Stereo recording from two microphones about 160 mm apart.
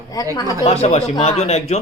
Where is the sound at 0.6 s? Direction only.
40° left (ahead or behind).